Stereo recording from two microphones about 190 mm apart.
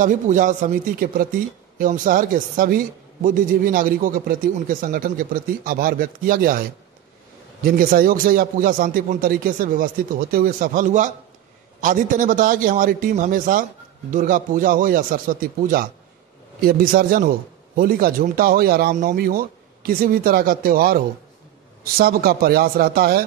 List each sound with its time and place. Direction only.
0.0 s a woman's voice: 45° right (ahead or behind)
7.6 s a woman's voice: 50° right (ahead or behind)